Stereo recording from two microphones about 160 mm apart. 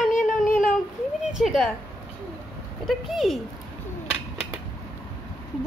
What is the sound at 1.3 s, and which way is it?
Speech, centre (ahead or behind).